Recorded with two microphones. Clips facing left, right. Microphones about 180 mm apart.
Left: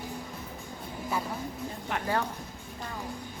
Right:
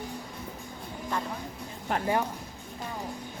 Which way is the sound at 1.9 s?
40° right (ahead or behind).